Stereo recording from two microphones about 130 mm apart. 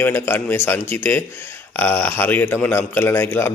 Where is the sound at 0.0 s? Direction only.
15° left (ahead or behind).